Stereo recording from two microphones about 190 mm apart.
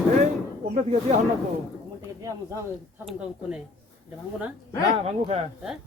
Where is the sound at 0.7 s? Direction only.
35° right (ahead or behind).